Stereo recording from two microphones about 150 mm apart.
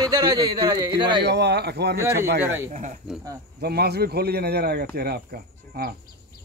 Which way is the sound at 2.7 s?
55° right (ahead or behind).